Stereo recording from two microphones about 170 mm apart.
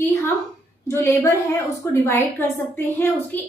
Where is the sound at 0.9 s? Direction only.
15° left (ahead or behind).